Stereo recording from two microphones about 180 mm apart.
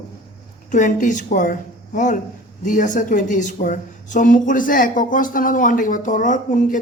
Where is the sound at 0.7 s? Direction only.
45° left (ahead or behind).